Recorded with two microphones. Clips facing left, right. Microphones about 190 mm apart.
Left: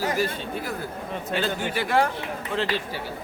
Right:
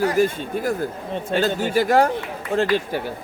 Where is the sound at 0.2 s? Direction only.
50° right (ahead or behind).